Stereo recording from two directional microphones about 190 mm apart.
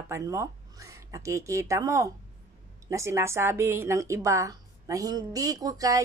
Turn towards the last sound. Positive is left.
turn(degrees=-20)  # may be behind; listen again after turning